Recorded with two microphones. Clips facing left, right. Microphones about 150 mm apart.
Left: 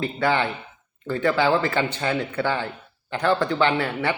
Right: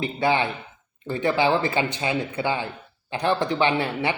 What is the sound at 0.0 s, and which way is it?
A man's voice, 15° right (ahead or behind).